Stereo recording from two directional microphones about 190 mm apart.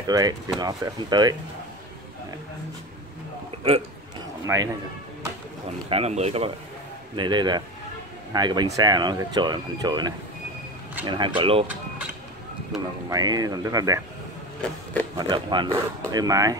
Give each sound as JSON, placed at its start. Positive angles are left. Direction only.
{"t": 0.0, "sound": "speech", "side_deg": -20}
{"t": 4.5, "sound": "a man's voice", "side_deg": -10}
{"t": 5.7, "sound": "speech", "side_deg": -30}
{"t": 7.2, "sound": "speech", "side_deg": -25}
{"t": 12.7, "sound": "speech", "side_deg": 0}
{"t": 13.1, "sound": "speech", "side_deg": -20}
{"t": 15.1, "sound": "speech", "side_deg": -25}